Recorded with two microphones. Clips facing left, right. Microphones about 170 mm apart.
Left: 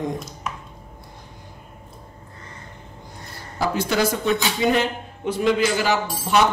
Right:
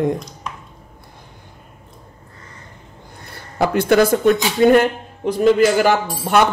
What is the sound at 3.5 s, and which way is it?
A man's voice, 60° right (ahead or behind).